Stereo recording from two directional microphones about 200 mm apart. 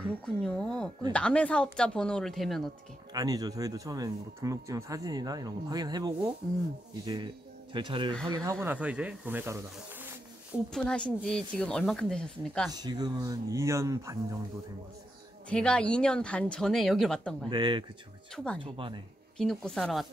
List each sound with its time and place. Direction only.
0.2 s speech: 5° left (ahead or behind)
3.1 s speech: 20° right (ahead or behind)
7.7 s speech: 25° right (ahead or behind)
10.7 s speech: 5° left (ahead or behind)
12.7 s speech: 20° right (ahead or behind)
15.5 s speech: 5° left (ahead or behind)
17.5 s speech: 25° right (ahead or behind)
18.3 s speech: 5° left (ahead or behind)
18.6 s speech: 25° right (ahead or behind)
19.3 s speech: 5° left (ahead or behind)